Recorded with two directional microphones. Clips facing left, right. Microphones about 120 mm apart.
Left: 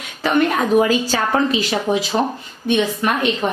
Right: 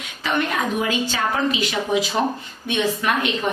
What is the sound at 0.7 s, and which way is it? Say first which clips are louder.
A woman's voice: left 7 dB; 40° left (ahead or behind).